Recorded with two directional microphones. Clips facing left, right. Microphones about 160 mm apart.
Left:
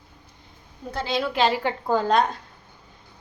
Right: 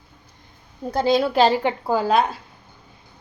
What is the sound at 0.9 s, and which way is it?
Speech, 40° right (ahead or behind).